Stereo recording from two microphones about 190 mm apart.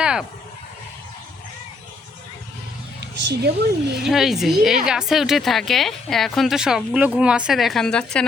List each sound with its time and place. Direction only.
0.0 s a sound: 5° right (ahead or behind)
3.0 s speech: 60° right (ahead or behind)
4.0 s speech: centre (ahead or behind)